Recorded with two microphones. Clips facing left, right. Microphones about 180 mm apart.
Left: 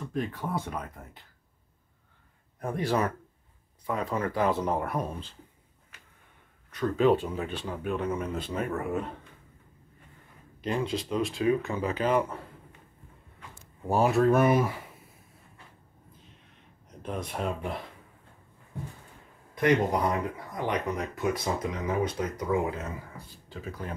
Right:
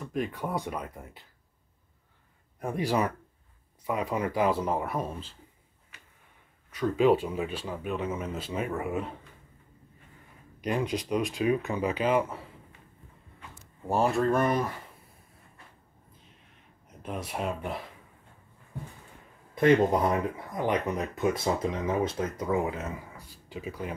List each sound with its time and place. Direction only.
0.3 s speech: 15° right (ahead or behind)
2.6 s speech: 10° right (ahead or behind)
6.7 s speech: 10° right (ahead or behind)
10.6 s speech: 15° right (ahead or behind); by 14.8 s 5° left (ahead or behind)
17.0 s speech: 5° right (ahead or behind)
19.5 s speech: 25° right (ahead or behind)